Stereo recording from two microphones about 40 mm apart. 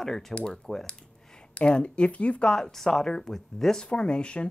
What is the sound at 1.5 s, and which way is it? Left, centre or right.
Speech, left.